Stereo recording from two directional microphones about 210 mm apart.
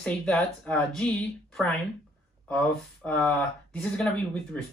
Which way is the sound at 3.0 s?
5° left (ahead or behind).